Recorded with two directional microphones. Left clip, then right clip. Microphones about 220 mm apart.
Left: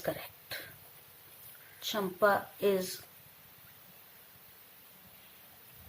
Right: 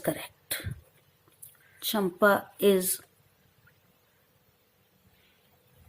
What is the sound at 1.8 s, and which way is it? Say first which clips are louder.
A woman's voice: right 5 dB; 35° right (ahead or behind).